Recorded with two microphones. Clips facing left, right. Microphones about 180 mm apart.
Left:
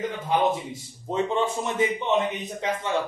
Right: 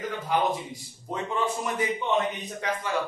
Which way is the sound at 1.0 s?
25° left (ahead or behind).